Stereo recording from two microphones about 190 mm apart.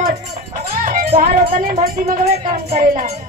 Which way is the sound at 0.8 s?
45° right (ahead or behind).